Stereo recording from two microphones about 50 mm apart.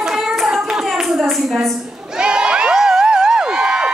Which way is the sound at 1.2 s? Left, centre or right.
Centre.